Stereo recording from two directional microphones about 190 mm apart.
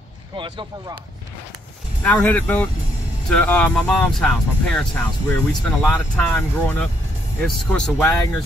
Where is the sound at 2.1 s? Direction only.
10° left (ahead or behind).